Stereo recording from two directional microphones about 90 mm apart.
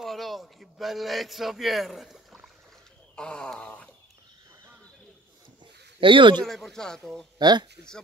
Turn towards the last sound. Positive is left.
turn(degrees=-50)  # may be behind; listen again after turning